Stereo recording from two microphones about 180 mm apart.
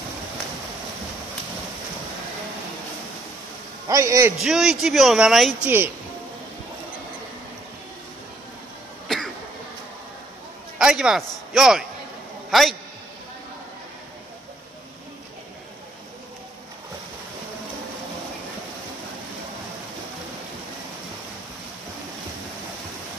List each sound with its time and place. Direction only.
3.9 s a man's voice: 15° right (ahead or behind)
4.4 s a man's voice: centre (ahead or behind)
9.0 s cough: centre (ahead or behind)
10.8 s a man's voice: 5° right (ahead or behind)